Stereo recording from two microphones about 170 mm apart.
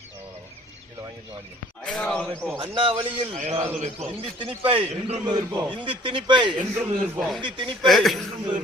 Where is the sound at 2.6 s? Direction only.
30° right (ahead or behind).